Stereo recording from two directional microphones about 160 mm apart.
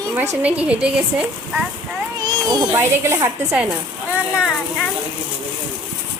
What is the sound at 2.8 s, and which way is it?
Speech, 15° right (ahead or behind).